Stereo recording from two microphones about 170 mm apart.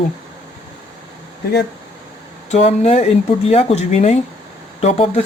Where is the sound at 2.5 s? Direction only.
40° left (ahead or behind).